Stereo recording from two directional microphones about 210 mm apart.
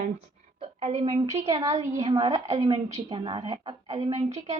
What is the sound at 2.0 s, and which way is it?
A woman's voice, 25° right (ahead or behind).